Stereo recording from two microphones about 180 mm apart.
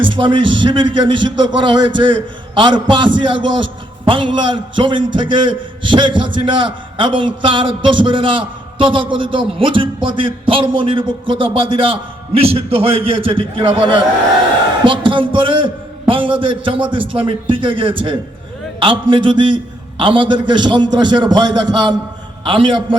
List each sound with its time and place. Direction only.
0.0 s a man's voice: 25° right (ahead or behind)